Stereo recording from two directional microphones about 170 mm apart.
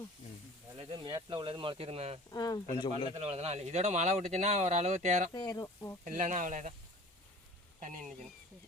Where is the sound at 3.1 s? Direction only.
40° right (ahead or behind).